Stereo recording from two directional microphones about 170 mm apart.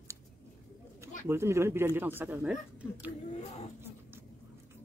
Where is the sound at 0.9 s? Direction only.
15° right (ahead or behind).